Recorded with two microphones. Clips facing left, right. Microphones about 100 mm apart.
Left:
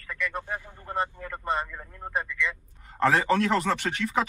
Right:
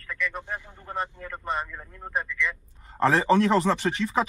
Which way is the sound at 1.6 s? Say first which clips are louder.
Even; 5° left (ahead or behind).